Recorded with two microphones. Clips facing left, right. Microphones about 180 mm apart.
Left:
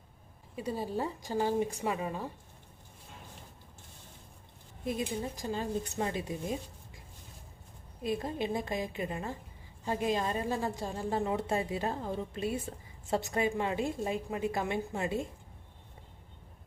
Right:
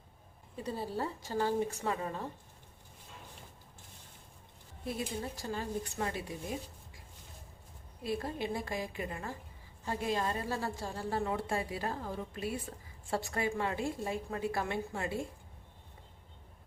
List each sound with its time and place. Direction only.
0.5 s a woman's voice: 15° left (ahead or behind)
4.9 s a woman's voice: 20° left (ahead or behind)
8.0 s a woman's voice: 20° left (ahead or behind)